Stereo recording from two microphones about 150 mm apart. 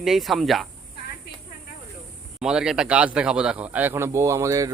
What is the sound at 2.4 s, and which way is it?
Speech, 5° right (ahead or behind).